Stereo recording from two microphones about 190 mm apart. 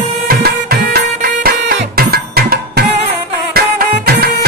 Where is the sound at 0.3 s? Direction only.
55° right (ahead or behind).